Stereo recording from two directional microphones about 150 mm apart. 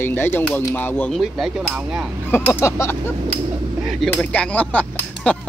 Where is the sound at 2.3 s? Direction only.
15° left (ahead or behind).